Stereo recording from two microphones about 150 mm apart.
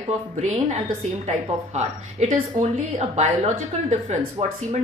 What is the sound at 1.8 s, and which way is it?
Speech, 50° right (ahead or behind).